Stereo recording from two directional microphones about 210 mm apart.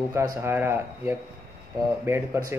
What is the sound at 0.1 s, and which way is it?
Speech, 15° right (ahead or behind).